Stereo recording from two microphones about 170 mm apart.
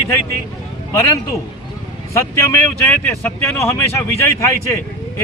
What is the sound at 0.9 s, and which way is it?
Speech, 20° left (ahead or behind).